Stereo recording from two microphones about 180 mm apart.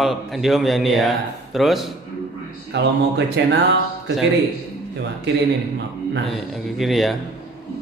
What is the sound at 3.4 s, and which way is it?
Speech, 85° right.